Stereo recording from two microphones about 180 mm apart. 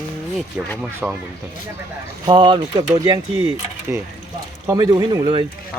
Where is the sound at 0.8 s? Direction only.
Centre (ahead or behind).